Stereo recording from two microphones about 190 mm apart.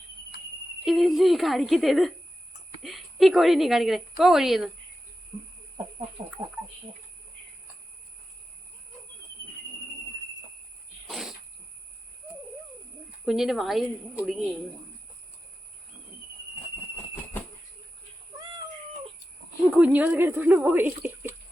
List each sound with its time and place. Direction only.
0.9 s speech: centre (ahead or behind)
6.2 s speech: 30° right (ahead or behind)
11.1 s a sound: centre (ahead or behind)
13.2 s speech: centre (ahead or behind)
19.7 s speech: 10° right (ahead or behind)